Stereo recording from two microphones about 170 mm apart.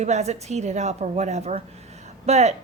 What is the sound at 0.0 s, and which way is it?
Speech, 40° right (ahead or behind).